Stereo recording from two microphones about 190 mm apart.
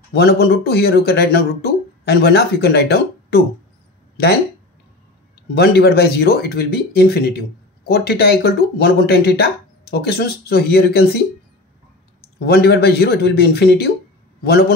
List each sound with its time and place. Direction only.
0.1 s speech: 55° left (ahead or behind)
5.5 s speech: 55° left (ahead or behind)
12.4 s a man's voice: 55° left (ahead or behind)